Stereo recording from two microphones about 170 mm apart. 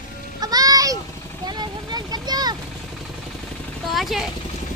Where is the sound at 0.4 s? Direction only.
20° right (ahead or behind).